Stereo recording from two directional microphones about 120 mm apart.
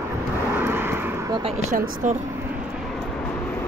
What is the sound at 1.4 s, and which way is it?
Speech, 75° right (ahead or behind).